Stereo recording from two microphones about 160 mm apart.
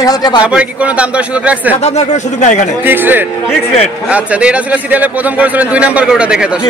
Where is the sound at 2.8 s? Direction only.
10° right (ahead or behind).